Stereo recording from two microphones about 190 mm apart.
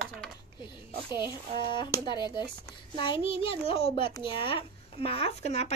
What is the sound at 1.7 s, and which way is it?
A child's voice, 25° left (ahead or behind).